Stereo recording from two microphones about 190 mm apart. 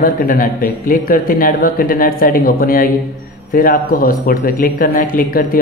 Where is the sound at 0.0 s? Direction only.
50° left (ahead or behind).